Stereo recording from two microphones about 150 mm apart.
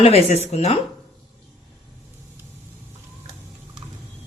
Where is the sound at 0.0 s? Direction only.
45° left (ahead or behind).